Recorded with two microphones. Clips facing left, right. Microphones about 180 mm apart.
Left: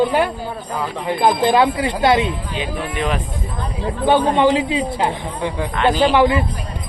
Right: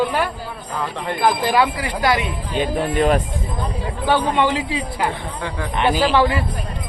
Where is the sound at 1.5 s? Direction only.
25° left (ahead or behind).